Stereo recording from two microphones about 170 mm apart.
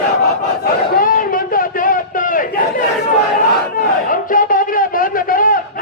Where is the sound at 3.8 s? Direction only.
55° left (ahead or behind).